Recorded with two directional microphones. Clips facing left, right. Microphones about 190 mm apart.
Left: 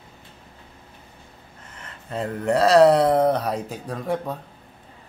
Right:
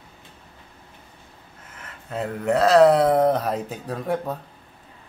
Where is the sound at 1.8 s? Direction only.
5° right (ahead or behind).